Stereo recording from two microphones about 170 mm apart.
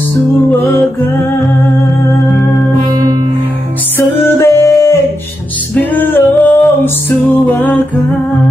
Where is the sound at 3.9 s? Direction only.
15° left (ahead or behind).